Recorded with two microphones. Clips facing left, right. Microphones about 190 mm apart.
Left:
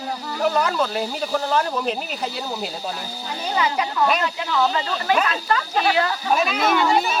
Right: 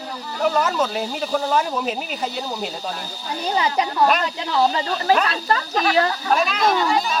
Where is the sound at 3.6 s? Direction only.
35° right (ahead or behind).